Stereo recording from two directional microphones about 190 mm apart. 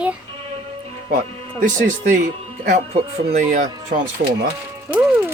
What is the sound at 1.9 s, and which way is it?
Speech, 40° right (ahead or behind).